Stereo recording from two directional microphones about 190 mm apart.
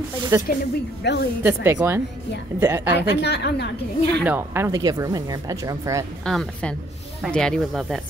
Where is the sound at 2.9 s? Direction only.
60° left (ahead or behind).